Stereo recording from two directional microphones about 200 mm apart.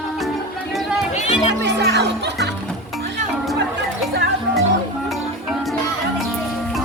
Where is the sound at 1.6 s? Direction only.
55° right (ahead or behind).